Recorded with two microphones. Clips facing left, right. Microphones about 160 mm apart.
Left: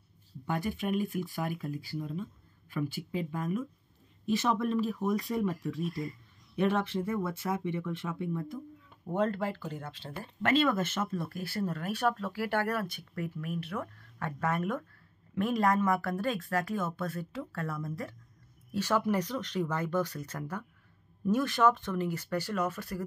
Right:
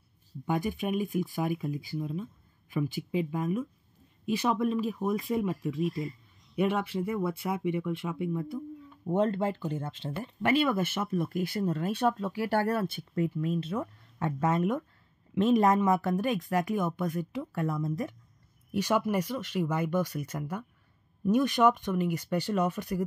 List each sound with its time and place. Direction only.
0.5 s speech: 15° right (ahead or behind)
10.4 s speech: 10° right (ahead or behind)
12.4 s speech: 30° right (ahead or behind)